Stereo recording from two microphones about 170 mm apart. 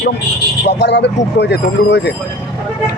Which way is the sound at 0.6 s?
90° left.